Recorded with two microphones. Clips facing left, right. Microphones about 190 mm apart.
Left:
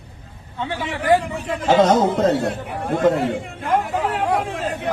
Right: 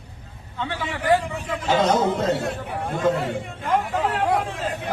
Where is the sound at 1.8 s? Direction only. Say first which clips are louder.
Left 4 dB; 40° left (ahead or behind).